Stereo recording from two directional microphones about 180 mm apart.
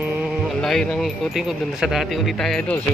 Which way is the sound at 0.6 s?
5° left (ahead or behind).